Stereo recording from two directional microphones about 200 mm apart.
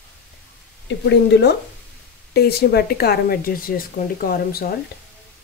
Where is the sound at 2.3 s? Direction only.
50° left (ahead or behind).